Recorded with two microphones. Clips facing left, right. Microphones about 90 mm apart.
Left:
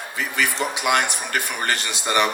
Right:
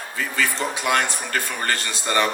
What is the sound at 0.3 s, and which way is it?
Speech, 20° left (ahead or behind).